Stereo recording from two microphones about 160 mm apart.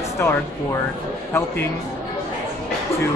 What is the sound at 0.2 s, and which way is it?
Speech, 15° left (ahead or behind).